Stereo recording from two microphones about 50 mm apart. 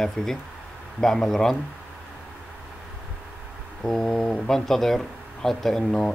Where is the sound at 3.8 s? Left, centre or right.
Centre.